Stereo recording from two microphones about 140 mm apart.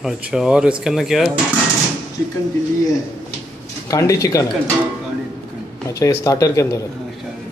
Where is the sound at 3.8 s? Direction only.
25° left (ahead or behind).